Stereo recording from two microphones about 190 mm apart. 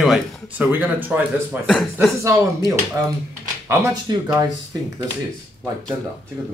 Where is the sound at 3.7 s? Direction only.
15° right (ahead or behind).